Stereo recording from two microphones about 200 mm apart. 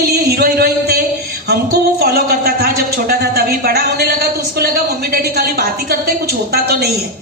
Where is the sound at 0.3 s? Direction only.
50° right (ahead or behind).